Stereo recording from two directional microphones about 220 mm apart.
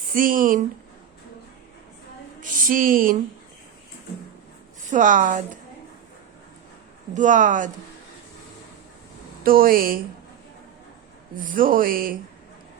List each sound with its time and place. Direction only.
0.1 s speech: 40° right (ahead or behind)
2.4 s speech: 40° right (ahead or behind)
4.9 s speech: 35° right (ahead or behind)
7.1 s speech: 35° right (ahead or behind)
9.4 s speech: 40° right (ahead or behind)
11.3 s speech: 40° right (ahead or behind)